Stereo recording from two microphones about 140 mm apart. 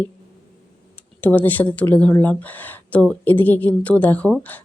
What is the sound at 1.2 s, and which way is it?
Speech, 10° left (ahead or behind).